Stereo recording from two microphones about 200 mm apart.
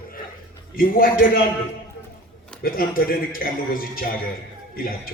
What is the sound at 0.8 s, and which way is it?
Speech, 45° left (ahead or behind).